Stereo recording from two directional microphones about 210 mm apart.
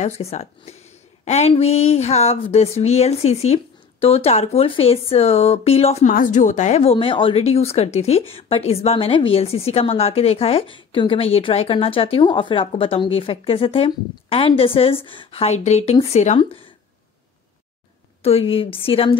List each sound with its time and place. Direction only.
0.0 s a woman's voice: 30° left (ahead or behind)
18.2 s a woman's voice: 25° left (ahead or behind)